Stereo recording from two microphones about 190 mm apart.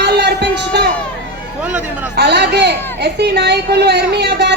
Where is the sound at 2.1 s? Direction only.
60° right (ahead or behind).